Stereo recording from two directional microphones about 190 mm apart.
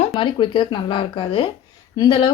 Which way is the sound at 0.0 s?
25° left (ahead or behind).